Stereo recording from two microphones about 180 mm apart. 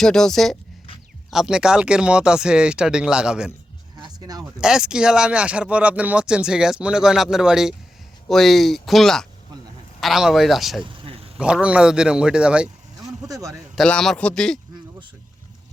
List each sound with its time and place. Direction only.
0.0 s speech: 5° left (ahead or behind)
4.0 s a sound: 20° right (ahead or behind)
4.6 s speech: 5° right (ahead or behind)
11.0 s a sound: 30° right (ahead or behind)
11.3 s speech: 5° right (ahead or behind)
13.2 s speech: 20° right (ahead or behind)
13.7 s speech: 5° left (ahead or behind)